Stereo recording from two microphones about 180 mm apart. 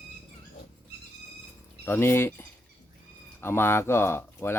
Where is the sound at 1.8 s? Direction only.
10° left (ahead or behind).